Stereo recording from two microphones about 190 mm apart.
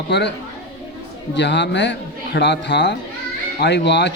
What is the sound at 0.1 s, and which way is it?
Speech, 65° left (ahead or behind).